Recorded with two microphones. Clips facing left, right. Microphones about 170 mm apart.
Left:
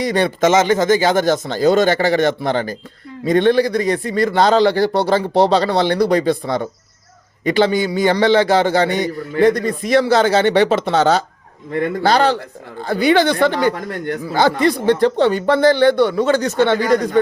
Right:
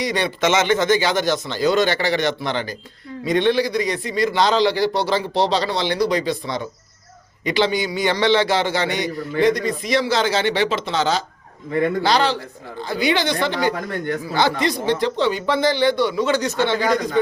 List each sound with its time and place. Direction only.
0.0 s a man's voice: 50° left (ahead or behind)